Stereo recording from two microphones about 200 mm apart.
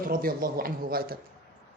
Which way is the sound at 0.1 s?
45° right (ahead or behind).